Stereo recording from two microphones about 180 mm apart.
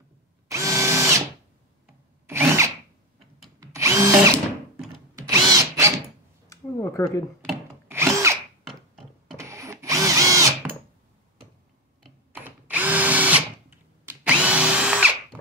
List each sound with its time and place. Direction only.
0.5 s drill: 15° right (ahead or behind)
2.2 s drill: 15° right (ahead or behind)
6.5 s a sound: 15° left (ahead or behind)
7.9 s drill: 15° right (ahead or behind)
9.4 s drill: 15° right (ahead or behind)
12.3 s drill: 10° right (ahead or behind)